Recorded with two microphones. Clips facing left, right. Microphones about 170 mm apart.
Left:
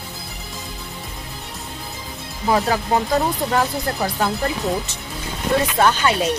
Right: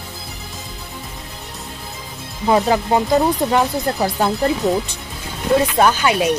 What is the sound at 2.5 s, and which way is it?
Speech, 20° right (ahead or behind).